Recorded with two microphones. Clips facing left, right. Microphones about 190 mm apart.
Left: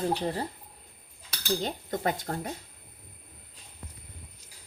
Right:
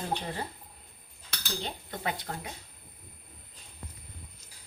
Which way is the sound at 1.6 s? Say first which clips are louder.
Left 6 dB; 45° left (ahead or behind).